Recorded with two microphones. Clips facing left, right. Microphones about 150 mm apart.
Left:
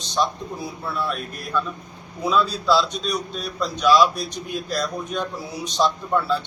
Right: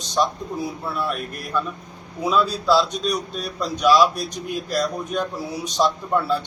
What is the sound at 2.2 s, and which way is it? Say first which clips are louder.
Speech: right 1 dB; 10° right (ahead or behind).